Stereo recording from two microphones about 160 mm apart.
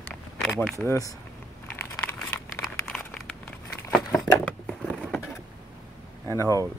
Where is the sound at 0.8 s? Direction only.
20° left (ahead or behind).